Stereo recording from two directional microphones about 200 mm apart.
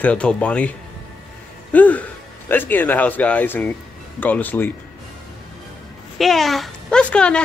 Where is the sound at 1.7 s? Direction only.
10° left (ahead or behind).